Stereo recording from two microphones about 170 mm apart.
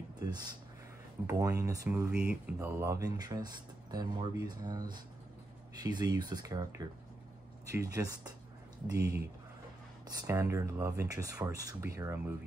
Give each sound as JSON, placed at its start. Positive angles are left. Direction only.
{"t": 0.2, "sound": "speech", "side_deg": -25}
{"t": 7.7, "sound": "speech", "side_deg": -20}